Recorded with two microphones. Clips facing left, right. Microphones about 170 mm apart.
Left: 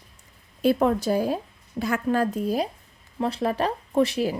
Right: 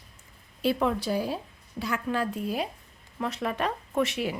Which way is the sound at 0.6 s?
45° left (ahead or behind).